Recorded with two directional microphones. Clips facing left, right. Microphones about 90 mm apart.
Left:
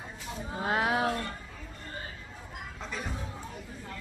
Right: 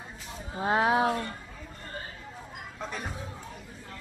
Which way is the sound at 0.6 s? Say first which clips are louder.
Right 4 dB; 25° right (ahead or behind).